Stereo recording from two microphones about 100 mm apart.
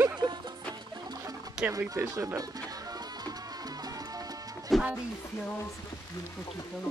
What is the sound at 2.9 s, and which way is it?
Music, 40° right (ahead or behind).